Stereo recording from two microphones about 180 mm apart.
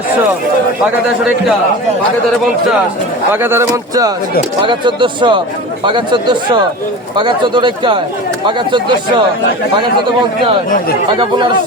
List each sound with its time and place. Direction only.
3.3 s speech: 15° right (ahead or behind)